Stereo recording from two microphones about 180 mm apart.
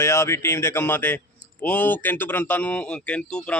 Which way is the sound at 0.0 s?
15° left (ahead or behind).